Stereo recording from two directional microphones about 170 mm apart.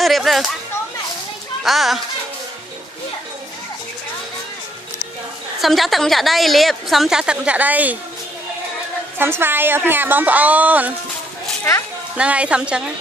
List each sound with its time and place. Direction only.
0.0 s speech: centre (ahead or behind)
1.6 s a woman's voice: centre (ahead or behind)
5.6 s a woman's voice: centre (ahead or behind)
9.1 s a woman's voice: 15° right (ahead or behind)
12.1 s a woman's voice: 5° right (ahead or behind)